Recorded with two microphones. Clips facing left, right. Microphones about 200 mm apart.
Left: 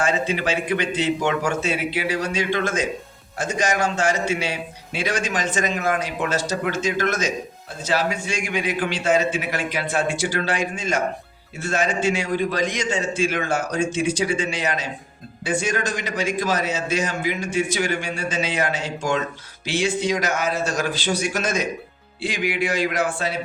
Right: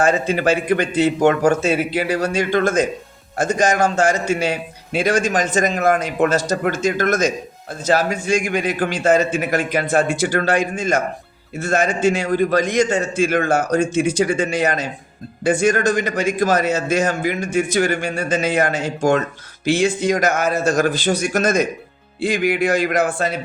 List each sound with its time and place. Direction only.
0.0 s a man's voice: 45° right (ahead or behind)